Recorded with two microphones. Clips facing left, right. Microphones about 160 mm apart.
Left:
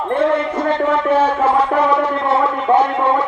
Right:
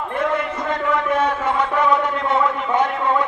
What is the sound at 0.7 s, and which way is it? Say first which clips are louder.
Music: left 5 dB; 30° left (ahead or behind).